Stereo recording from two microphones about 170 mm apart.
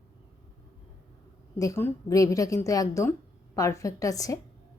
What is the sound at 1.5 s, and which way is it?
A woman's voice, 15° left (ahead or behind).